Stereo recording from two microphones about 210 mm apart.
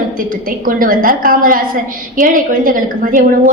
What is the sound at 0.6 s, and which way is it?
A woman's voice, 40° right (ahead or behind).